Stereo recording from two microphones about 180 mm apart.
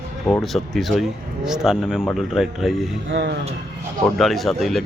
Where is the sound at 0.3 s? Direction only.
Centre (ahead or behind).